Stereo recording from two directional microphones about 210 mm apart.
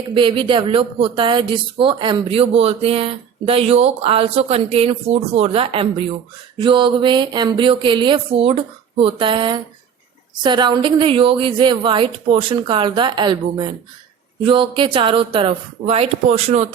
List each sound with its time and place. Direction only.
0.1 s speech: 25° right (ahead or behind)